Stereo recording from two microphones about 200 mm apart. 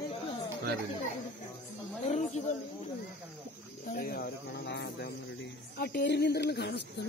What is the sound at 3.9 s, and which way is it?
Speech, 50° left (ahead or behind).